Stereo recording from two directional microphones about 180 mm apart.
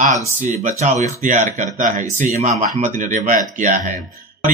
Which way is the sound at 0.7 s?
40° right (ahead or behind).